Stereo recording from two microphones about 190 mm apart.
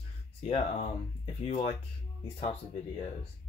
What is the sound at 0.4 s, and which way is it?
Speech, 30° left (ahead or behind).